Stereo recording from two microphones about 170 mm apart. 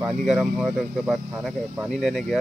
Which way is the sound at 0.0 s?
Centre (ahead or behind).